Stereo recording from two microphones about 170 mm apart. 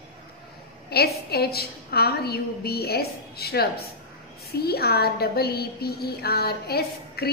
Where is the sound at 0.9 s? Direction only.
70° left (ahead or behind).